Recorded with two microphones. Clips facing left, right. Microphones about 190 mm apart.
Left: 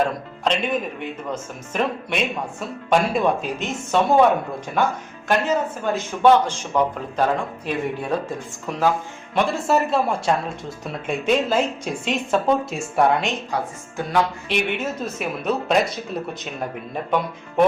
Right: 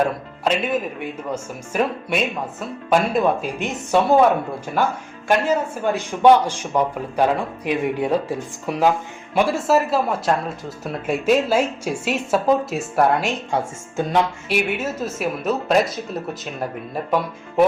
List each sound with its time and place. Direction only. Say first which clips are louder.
0.4 s a man's voice: right 1 dB; 5° right (ahead or behind)
13.5 s speech: right 3 dB; 25° right (ahead or behind)
14.5 s speech: right 2 dB; 5° right (ahead or behind)